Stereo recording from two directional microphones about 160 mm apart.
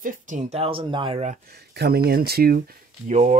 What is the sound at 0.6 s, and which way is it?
Speech, 35° right (ahead or behind).